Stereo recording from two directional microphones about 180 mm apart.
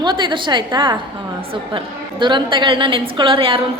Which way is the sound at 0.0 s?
25° right (ahead or behind).